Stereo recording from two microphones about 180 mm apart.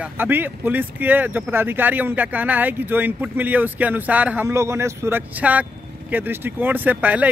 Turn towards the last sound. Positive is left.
turn(degrees=-10)  # may be behind; listen again after turning